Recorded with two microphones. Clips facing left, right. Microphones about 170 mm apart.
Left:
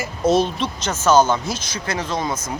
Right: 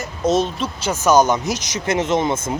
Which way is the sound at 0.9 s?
15° right (ahead or behind).